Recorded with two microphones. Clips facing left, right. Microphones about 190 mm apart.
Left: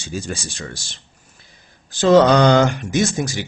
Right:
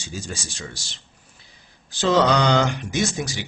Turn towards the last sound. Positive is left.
turn(degrees=45)  # may be behind; listen again after turning